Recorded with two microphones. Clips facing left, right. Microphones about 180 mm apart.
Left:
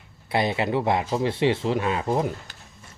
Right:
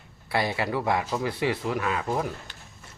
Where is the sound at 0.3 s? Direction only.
20° left (ahead or behind).